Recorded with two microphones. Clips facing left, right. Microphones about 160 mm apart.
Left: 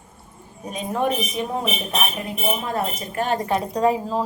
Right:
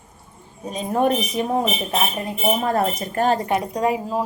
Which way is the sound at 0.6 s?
35° right (ahead or behind).